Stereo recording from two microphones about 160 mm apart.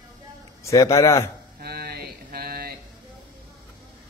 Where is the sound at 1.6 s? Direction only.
80° right.